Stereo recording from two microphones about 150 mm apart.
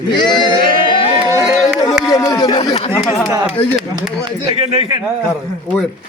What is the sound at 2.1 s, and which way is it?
Speech, 25° left (ahead or behind).